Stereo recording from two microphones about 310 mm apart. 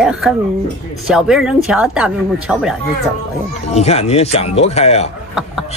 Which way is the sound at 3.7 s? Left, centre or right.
Centre.